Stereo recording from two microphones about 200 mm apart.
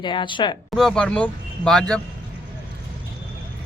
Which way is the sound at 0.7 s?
Centre (ahead or behind).